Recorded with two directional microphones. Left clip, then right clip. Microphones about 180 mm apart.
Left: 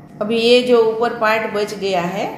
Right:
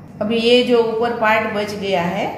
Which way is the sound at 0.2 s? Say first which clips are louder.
Left 1 dB; 40° left (ahead or behind).